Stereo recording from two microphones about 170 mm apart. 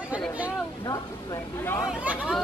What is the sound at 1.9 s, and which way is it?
Chatter, 5° right (ahead or behind).